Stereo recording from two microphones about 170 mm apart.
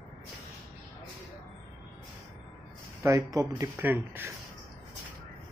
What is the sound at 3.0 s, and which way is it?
Speech, 15° right (ahead or behind).